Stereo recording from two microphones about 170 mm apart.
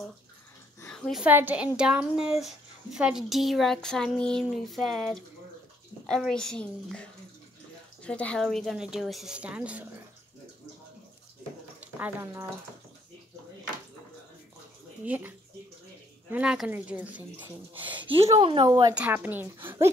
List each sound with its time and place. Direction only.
0.8 s a sound: 5° left (ahead or behind)
1.2 s speech: 10° right (ahead or behind)
11.8 s speech: 10° right (ahead or behind)
15.0 s speech: 10° right (ahead or behind)
17.9 s speech: 30° right (ahead or behind)
18.9 s speech: 10° right (ahead or behind)